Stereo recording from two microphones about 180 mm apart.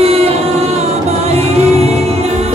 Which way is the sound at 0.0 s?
35° right (ahead or behind).